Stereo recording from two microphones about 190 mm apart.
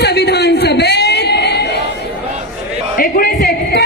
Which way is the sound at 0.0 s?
60° left (ahead or behind).